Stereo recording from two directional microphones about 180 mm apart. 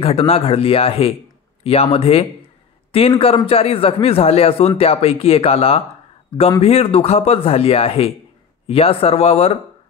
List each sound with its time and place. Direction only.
0.0 s speech: 30° left (ahead or behind)